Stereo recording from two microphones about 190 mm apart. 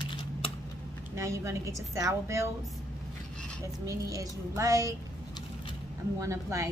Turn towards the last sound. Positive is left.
turn(degrees=-15)  # may be behind; listen again after turning